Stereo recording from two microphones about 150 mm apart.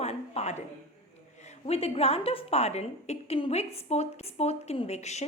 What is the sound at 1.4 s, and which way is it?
A woman's voice, 45° left (ahead or behind).